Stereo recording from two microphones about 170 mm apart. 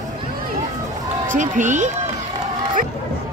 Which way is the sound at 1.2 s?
50° right (ahead or behind).